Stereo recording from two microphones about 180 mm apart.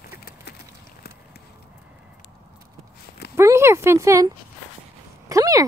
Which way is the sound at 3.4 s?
15° right (ahead or behind).